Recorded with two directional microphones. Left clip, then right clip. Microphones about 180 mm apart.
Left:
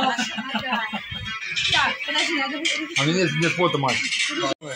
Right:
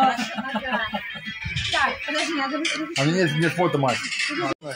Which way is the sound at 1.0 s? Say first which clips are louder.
Left 2 dB; 75° right (ahead or behind).